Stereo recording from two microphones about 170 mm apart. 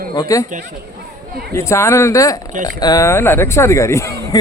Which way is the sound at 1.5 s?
15° left (ahead or behind).